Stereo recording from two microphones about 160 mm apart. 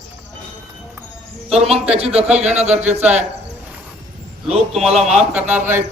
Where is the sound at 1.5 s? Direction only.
40° right (ahead or behind).